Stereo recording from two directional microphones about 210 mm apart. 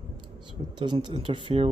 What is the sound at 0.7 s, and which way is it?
Speech, 20° right (ahead or behind).